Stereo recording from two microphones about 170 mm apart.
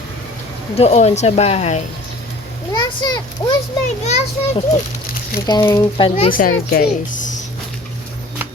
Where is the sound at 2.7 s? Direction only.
25° left (ahead or behind).